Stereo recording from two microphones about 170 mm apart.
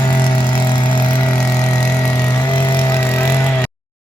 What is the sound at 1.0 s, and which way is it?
Vehicle, 10° left (ahead or behind).